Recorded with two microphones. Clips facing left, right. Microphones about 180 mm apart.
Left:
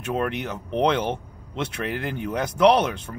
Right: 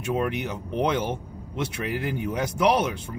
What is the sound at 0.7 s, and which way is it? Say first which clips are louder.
Speech: left 3 dB; 60° left (ahead or behind).